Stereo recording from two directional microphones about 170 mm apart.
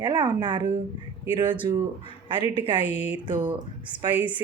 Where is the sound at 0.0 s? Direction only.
25° right (ahead or behind).